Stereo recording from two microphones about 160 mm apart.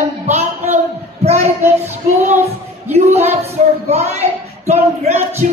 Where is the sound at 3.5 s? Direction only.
40° right (ahead or behind).